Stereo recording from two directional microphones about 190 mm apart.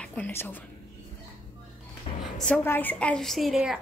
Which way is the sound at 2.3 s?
5° left (ahead or behind).